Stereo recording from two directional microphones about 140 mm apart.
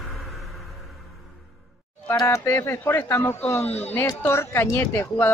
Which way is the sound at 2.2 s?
20° left (ahead or behind).